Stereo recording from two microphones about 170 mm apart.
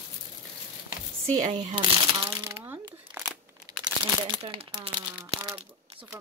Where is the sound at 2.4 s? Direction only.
15° right (ahead or behind).